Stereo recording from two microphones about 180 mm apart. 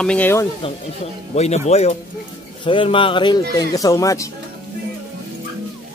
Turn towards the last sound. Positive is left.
turn(degrees=20)  # may be behind; listen again after turning